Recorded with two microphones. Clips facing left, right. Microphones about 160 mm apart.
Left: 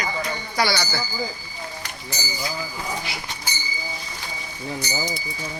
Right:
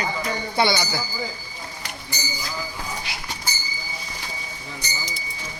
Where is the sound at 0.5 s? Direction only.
20° right (ahead or behind).